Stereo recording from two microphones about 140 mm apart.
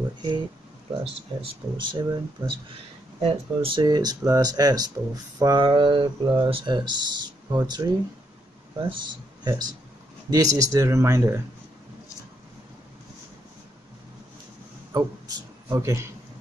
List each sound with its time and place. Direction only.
1.0 s speech: 40° right (ahead or behind)
2.4 s speech: 15° right (ahead or behind)
3.2 s speech: 40° right (ahead or behind); by 11.4 s 20° right (ahead or behind)
14.9 s a man's voice: 25° right (ahead or behind)